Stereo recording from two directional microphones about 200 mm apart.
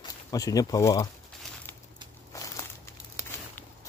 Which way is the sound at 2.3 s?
15° left (ahead or behind).